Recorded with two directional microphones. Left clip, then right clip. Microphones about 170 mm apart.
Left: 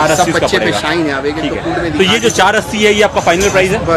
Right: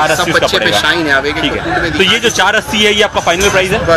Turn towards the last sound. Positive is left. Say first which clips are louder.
# even
turn(degrees=5)  # may be behind; listen again after turning